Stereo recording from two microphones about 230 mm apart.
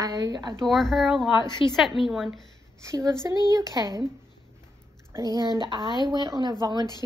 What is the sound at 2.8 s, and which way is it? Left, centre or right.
A woman's voice, centre.